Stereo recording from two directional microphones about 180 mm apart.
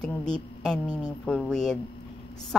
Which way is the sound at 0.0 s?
5° left (ahead or behind).